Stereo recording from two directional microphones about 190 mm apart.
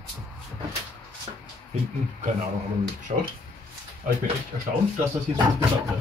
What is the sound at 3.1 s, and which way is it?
Speech, 40° right (ahead or behind).